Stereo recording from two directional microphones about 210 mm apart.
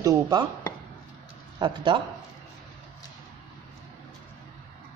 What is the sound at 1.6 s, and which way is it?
Speech, 20° right (ahead or behind).